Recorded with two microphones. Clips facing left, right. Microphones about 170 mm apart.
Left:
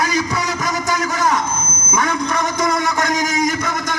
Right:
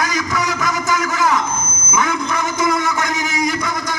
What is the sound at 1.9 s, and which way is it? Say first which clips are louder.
A man's voice: even; 35° left (ahead or behind).